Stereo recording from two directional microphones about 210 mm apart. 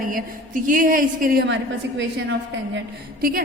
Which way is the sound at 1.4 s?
60° right (ahead or behind).